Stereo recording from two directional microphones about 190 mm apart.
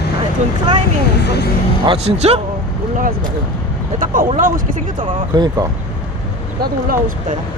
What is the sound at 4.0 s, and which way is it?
Speech, 45° right (ahead or behind).